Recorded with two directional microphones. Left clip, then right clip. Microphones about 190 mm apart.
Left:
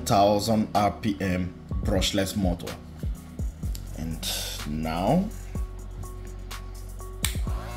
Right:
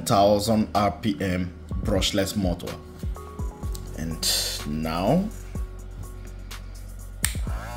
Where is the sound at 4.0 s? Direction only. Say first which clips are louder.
Right 6 dB; 25° right (ahead or behind).